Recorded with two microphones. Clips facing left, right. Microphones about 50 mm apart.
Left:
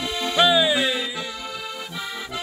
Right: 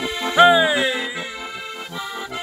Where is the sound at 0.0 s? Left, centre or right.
Right.